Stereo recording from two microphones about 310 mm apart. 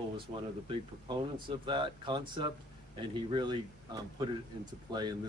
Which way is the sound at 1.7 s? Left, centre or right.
Centre.